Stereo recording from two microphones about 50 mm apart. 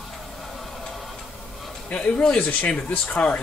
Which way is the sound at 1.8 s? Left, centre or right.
Left.